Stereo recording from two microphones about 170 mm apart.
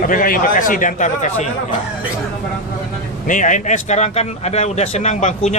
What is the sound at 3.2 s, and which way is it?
A man's voice, 50° left (ahead or behind).